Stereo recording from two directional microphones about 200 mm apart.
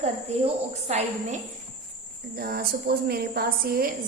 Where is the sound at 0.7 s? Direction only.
35° right (ahead or behind).